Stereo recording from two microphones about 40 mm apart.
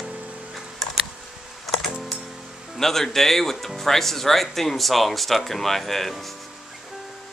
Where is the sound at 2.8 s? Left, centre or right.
Centre.